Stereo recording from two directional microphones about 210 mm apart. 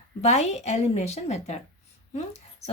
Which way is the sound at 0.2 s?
30° left (ahead or behind).